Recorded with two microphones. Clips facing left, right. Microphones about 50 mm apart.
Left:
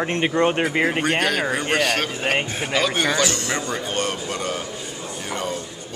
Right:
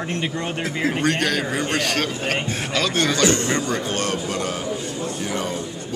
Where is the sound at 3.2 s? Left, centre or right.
Right.